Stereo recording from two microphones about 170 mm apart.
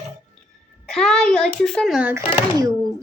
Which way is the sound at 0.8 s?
5° left (ahead or behind).